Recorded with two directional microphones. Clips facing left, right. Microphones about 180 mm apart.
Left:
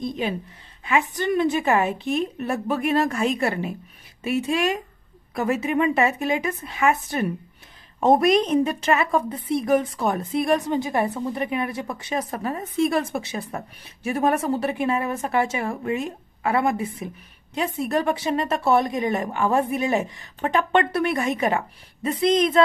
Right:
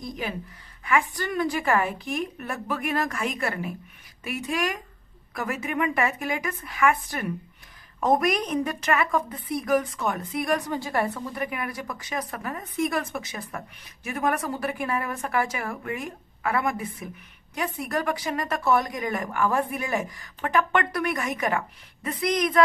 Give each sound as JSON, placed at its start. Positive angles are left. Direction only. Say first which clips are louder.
{"t": 0.0, "sound": "a woman's voice", "louder": "left 6 dB", "side_deg": 25}